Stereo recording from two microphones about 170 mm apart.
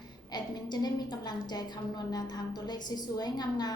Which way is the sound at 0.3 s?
25° left (ahead or behind).